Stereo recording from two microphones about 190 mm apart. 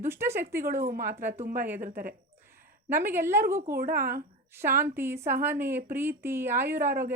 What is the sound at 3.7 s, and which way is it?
Speech, 50° right (ahead or behind).